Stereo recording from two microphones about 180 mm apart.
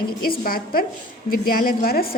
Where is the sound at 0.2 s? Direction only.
55° left (ahead or behind).